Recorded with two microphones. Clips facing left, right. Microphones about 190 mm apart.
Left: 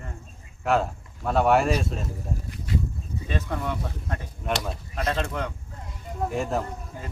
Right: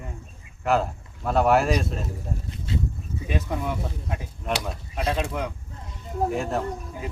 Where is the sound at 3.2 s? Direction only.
10° right (ahead or behind).